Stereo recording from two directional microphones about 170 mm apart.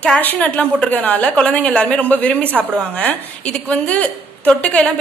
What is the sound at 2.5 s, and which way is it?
Speech, 10° right (ahead or behind).